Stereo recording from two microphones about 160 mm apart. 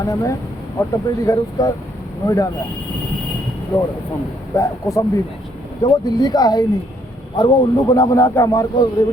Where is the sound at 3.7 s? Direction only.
30° left (ahead or behind).